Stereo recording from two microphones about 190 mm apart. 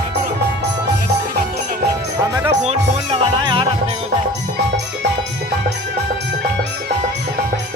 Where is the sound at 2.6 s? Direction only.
25° right (ahead or behind).